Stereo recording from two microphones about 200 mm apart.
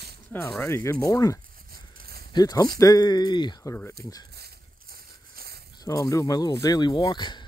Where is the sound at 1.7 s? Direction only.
50° right (ahead or behind).